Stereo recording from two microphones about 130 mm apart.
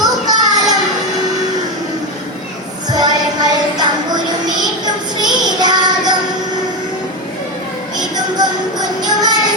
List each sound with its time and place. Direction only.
0.0 s a sound: 30° right (ahead or behind)
2.9 s music: 30° right (ahead or behind)
7.9 s music: 30° right (ahead or behind)